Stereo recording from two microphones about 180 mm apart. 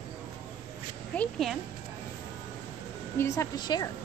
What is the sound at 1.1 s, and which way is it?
Speech, centre (ahead or behind).